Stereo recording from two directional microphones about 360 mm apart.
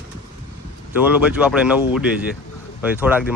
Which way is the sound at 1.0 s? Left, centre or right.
Centre.